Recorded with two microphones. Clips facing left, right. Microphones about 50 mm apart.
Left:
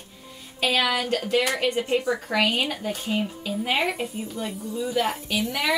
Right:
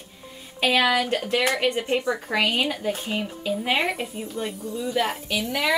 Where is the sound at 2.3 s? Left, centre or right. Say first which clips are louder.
Even; centre.